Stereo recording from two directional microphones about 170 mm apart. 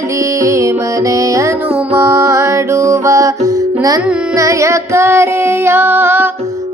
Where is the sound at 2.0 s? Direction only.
15° right (ahead or behind).